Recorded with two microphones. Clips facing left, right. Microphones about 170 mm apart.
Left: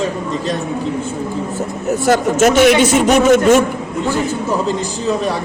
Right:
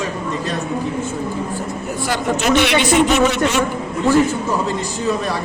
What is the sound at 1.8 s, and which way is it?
A man's voice, 45° left (ahead or behind).